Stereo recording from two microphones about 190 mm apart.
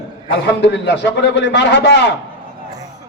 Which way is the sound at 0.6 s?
65° left (ahead or behind).